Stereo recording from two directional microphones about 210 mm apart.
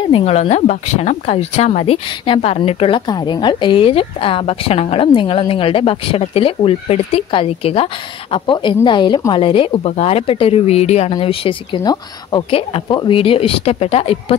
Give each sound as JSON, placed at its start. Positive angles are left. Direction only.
{"t": 0.1, "sound": "speech", "side_deg": 30}